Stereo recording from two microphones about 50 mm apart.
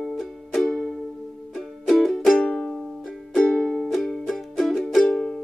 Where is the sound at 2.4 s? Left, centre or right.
Centre.